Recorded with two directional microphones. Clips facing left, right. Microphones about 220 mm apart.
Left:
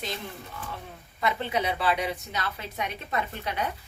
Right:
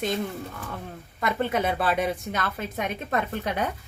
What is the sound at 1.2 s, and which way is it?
A woman's voice, 50° right (ahead or behind).